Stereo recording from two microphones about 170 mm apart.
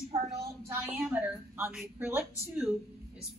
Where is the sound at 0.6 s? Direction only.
15° right (ahead or behind).